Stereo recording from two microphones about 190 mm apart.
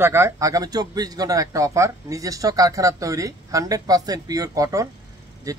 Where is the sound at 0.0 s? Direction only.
15° right (ahead or behind).